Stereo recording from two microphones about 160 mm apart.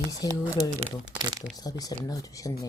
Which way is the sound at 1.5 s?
25° left (ahead or behind).